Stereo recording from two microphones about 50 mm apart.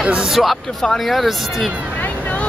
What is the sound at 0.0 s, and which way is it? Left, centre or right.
Speech, right.